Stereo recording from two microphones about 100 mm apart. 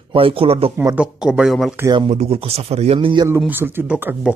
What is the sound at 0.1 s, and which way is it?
Speech, 65° right (ahead or behind).